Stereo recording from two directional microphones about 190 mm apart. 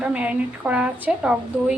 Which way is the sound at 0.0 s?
5° right (ahead or behind).